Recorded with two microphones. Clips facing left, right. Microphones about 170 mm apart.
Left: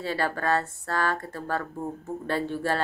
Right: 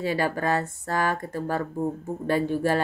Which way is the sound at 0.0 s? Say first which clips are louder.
Right 3 dB; 15° right (ahead or behind).